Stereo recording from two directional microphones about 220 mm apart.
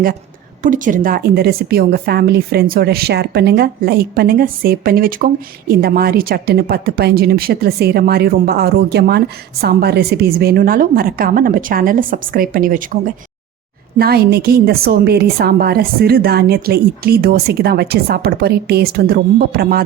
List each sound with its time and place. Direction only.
0.6 s a woman's voice: 35° right (ahead or behind)
14.0 s a woman's voice: 45° right (ahead or behind)